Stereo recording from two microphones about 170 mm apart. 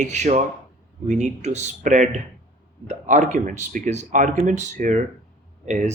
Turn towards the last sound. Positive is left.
turn(degrees=-45)  # may be behind; listen again after turning